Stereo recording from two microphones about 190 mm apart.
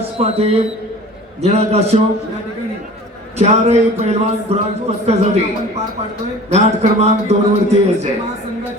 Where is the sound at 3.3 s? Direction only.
35° right (ahead or behind).